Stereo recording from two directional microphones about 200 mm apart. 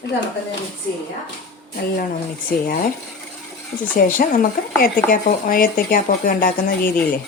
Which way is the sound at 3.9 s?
45° left (ahead or behind).